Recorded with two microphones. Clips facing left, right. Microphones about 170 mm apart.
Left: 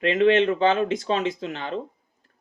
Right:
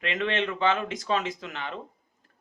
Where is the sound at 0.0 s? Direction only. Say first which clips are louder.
Left 10 dB; 35° left (ahead or behind).